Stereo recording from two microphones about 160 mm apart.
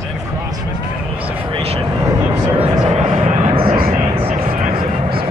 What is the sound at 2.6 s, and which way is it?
Vehicle, 35° right (ahead or behind).